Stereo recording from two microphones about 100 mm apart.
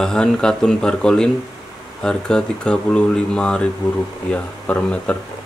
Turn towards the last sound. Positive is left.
turn(degrees=10)  # may be behind; listen again after turning